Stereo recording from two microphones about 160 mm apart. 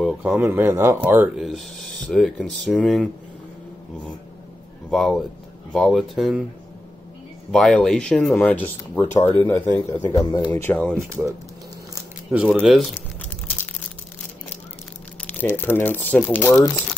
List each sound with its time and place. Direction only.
0.0 s speech: 5° right (ahead or behind)
1.4 s speech: centre (ahead or behind)
4.9 s speech: centre (ahead or behind)
7.5 s speech: 5° left (ahead or behind)
11.0 s speech: 20° right (ahead or behind)
12.6 s speech: centre (ahead or behind)
15.2 s speech: 10° left (ahead or behind)